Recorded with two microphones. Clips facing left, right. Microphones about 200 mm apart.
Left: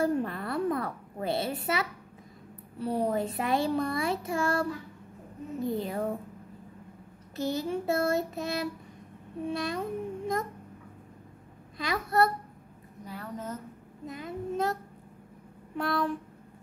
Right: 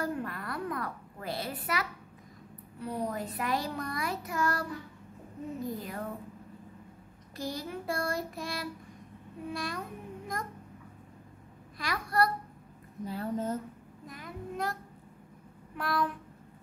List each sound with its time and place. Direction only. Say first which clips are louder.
0.0 s a sound: left 6 dB; 25° left (ahead or behind)
2.8 s speech: left 6 dB; 30° left (ahead or behind)
7.3 s a child's voice: left 7 dB; 25° left (ahead or behind)
11.8 s speech: left 3 dB; 25° left (ahead or behind)
13.0 s a woman's voice: right 5 dB; 30° right (ahead or behind)
14.0 s speech: left 7 dB; 25° left (ahead or behind)
15.8 s speech: left 2 dB; 25° left (ahead or behind)